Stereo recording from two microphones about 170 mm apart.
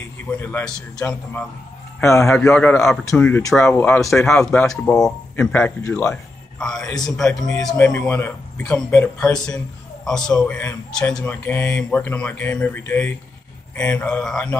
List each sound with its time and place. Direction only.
0.4 s a man's voice: 10° left (ahead or behind)
2.0 s a man's voice: 15° left (ahead or behind)
4.0 s a man's voice: centre (ahead or behind)
6.6 s a man's voice: 5° left (ahead or behind)
7.7 s a man's voice: 15° left (ahead or behind)